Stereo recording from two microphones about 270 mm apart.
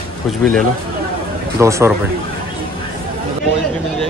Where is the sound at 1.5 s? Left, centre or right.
Centre.